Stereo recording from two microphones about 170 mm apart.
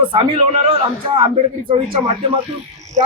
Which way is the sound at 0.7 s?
30° right (ahead or behind).